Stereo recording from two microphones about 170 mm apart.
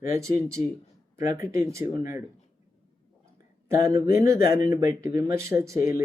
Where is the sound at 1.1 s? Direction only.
15° right (ahead or behind).